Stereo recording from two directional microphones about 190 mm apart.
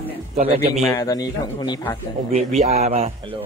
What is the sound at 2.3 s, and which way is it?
Speech, 35° right (ahead or behind).